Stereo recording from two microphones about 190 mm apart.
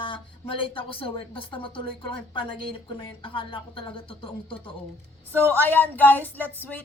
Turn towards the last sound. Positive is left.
turn(degrees=10)  # may be behind; listen again after turning